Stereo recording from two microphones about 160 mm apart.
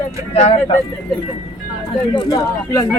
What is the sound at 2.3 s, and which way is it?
Speech, 20° left (ahead or behind).